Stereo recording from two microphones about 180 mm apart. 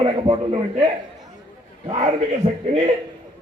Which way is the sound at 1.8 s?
35° right (ahead or behind).